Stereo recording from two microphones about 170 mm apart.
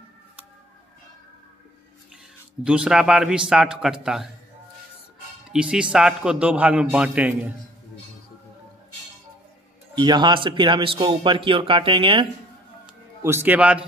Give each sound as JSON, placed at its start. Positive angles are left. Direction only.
{"t": 2.6, "sound": "a man's voice", "side_deg": -5}
{"t": 5.5, "sound": "a man's voice", "side_deg": -5}
{"t": 9.9, "sound": "speech", "side_deg": -25}
{"t": 13.2, "sound": "a man's voice", "side_deg": -15}